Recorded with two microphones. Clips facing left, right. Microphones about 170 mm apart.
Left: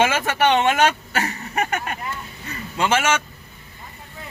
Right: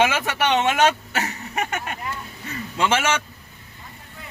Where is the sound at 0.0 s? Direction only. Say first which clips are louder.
Left 2 dB; 15° right (ahead or behind).